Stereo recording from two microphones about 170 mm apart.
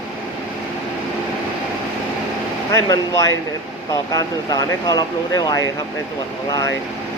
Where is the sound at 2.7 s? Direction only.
20° left (ahead or behind).